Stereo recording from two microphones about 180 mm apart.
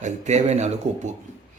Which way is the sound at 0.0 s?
40° right (ahead or behind).